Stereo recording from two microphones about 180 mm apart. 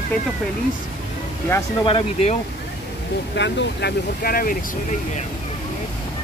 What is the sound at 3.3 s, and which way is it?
Speech, 70° left (ahead or behind).